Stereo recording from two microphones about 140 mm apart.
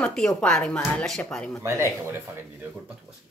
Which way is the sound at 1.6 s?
20° right (ahead or behind).